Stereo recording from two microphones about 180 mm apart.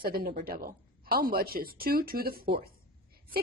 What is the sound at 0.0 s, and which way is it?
A woman's voice, 55° right (ahead or behind).